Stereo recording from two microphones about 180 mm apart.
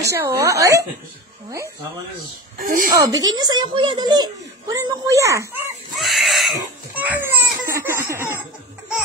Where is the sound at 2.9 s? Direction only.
20° right (ahead or behind).